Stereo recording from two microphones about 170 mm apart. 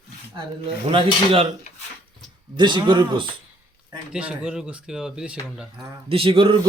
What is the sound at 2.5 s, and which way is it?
Speech, 25° right (ahead or behind).